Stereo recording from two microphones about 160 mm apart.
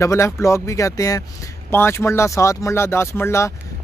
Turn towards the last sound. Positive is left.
turn(degrees=15)  # may be behind; listen again after turning